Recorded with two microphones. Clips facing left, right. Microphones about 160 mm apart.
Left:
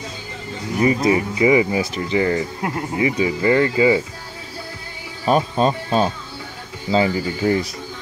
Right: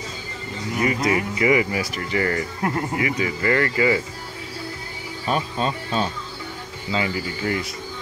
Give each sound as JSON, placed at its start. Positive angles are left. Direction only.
{"t": 0.8, "sound": "speech", "side_deg": 25}
{"t": 5.2, "sound": "speech", "side_deg": 40}